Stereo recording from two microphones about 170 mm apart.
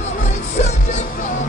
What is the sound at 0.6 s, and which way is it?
Music, 45° left (ahead or behind).